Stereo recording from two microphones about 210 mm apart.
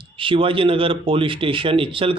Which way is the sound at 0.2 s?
25° right (ahead or behind).